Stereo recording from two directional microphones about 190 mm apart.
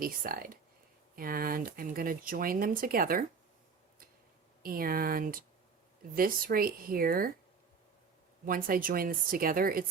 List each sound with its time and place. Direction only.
0.0 s speech: 50° right (ahead or behind)
4.6 s speech: 50° right (ahead or behind)
8.4 s speech: 50° right (ahead or behind)